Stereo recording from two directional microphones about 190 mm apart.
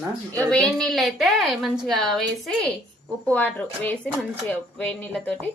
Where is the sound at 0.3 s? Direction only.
5° left (ahead or behind).